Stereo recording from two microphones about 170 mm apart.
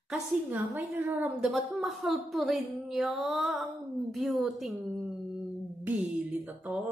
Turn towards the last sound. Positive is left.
turn(degrees=-10)  # may be behind; listen again after turning